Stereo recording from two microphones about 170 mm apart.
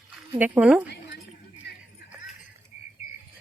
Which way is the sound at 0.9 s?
80° left.